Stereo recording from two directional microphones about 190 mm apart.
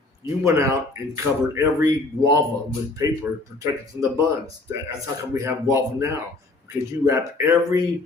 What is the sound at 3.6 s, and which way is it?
Speech, 20° right (ahead or behind).